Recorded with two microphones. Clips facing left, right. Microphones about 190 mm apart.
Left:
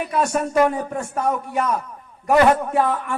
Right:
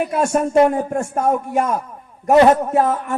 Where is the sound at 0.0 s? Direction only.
50° right (ahead or behind).